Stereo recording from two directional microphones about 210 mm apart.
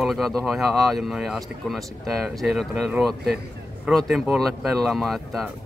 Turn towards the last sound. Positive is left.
turn(degrees=0)  # may be behind; listen again after turning